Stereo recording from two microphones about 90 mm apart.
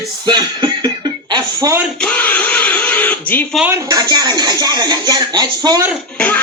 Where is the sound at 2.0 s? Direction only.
15° left (ahead or behind).